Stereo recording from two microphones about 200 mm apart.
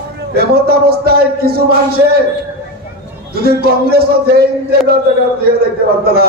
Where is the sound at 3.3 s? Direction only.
50° right (ahead or behind).